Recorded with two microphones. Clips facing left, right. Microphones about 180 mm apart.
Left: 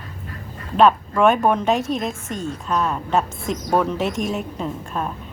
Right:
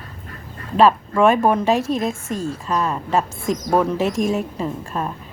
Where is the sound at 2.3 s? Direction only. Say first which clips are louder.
Right 3 dB; 35° right (ahead or behind).